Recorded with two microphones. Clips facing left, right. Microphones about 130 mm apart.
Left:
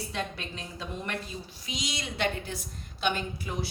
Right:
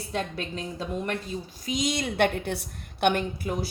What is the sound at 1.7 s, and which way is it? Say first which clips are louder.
Speech: right 9 dB; 50° right (ahead or behind).